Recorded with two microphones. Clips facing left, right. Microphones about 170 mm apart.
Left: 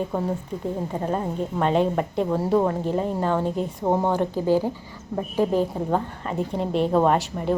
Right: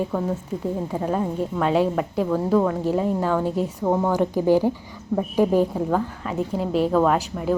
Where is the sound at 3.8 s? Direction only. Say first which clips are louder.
Even; 20° left (ahead or behind).